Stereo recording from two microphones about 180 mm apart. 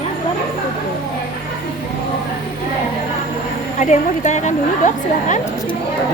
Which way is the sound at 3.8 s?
40° left (ahead or behind).